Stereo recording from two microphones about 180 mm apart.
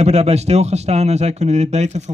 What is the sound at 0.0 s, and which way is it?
Speech, 35° right (ahead or behind).